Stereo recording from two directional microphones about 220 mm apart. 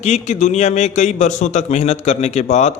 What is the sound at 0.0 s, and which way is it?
A man's voice, 30° left (ahead or behind).